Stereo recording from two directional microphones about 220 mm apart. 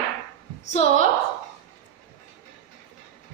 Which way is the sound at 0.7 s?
30° left (ahead or behind).